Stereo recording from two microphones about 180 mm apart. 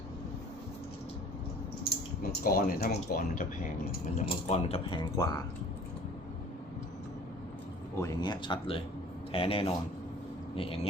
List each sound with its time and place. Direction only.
2.4 s speech: 50° left (ahead or behind)
4.2 s speech: 40° left (ahead or behind); by 5.4 s 20° left (ahead or behind)
7.9 s speech: 20° left (ahead or behind)